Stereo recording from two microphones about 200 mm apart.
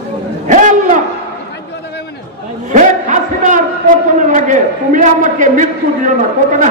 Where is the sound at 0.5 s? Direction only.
40° right (ahead or behind).